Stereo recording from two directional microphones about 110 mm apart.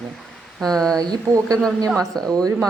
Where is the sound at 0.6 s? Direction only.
5° left (ahead or behind).